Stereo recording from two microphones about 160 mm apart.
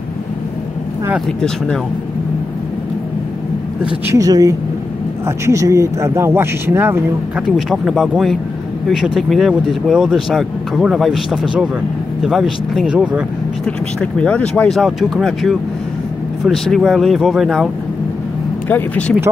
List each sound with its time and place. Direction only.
4.1 s speech: 20° right (ahead or behind)
14.2 s speech: 5° left (ahead or behind)
18.7 s speech: 10° left (ahead or behind)